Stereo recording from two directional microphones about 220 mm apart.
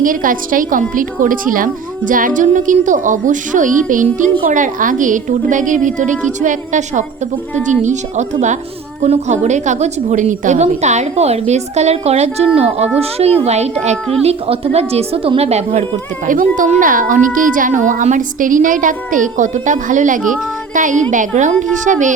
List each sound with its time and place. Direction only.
0.0 s a woman's voice: 40° right (ahead or behind)